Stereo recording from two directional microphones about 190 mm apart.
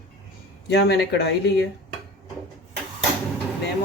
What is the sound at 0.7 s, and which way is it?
Speech, 65° left (ahead or behind).